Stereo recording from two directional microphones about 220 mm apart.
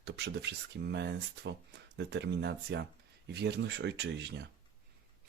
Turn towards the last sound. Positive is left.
turn(degrees=-50)  # may be behind; listen again after turning